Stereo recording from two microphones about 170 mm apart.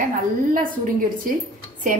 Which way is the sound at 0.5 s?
55° right (ahead or behind).